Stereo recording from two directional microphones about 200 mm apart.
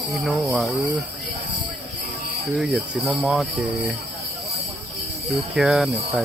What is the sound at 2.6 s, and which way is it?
Speech, centre (ahead or behind).